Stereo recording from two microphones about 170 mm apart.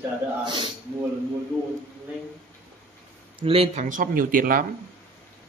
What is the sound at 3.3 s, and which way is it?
Speech, 35° right (ahead or behind).